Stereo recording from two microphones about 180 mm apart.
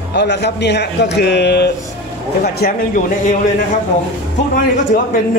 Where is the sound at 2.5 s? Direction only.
50° left (ahead or behind).